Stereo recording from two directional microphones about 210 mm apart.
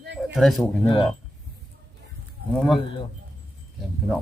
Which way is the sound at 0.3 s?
Centre (ahead or behind).